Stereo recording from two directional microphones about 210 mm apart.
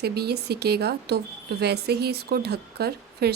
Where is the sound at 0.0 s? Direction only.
50° right (ahead or behind).